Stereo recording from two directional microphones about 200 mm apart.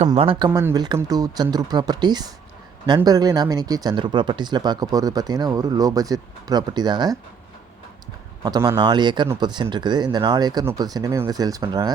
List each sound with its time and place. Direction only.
0.1 s speech: 25° right (ahead or behind)
8.4 s speech: 20° right (ahead or behind)